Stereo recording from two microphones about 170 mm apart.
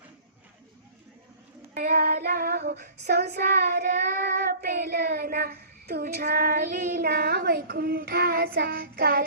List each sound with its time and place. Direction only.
1.7 s child singing: 60° right (ahead or behind)
3.2 s child singing: 60° right (ahead or behind)